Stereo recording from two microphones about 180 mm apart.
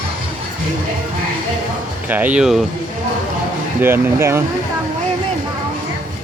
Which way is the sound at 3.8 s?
15° right (ahead or behind).